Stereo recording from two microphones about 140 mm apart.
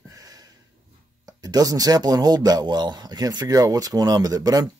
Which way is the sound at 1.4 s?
25° right (ahead or behind).